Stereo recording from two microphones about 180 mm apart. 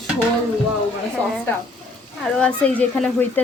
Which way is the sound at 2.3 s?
5° left (ahead or behind).